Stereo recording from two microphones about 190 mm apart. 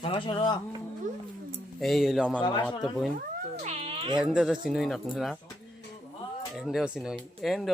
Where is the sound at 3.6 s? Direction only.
35° right (ahead or behind).